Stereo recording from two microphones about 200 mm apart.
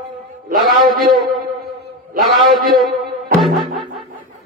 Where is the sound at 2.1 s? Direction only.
Centre (ahead or behind).